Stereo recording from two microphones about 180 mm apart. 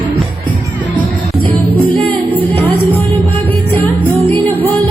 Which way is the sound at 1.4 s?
30° right (ahead or behind).